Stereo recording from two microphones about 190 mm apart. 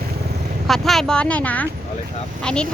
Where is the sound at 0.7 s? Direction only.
Centre (ahead or behind).